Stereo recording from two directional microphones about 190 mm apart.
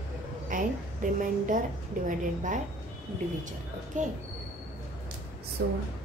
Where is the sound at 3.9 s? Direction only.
40° right (ahead or behind).